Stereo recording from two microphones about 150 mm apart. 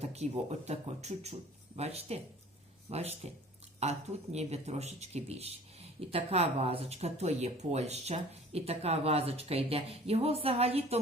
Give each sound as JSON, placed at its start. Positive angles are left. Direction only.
{"t": 0.0, "sound": "speech", "side_deg": -45}